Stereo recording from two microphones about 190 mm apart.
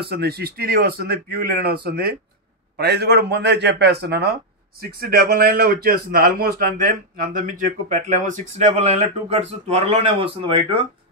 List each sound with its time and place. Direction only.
0.0 s a man's voice: 55° right (ahead or behind); by 10.9 s 25° right (ahead or behind)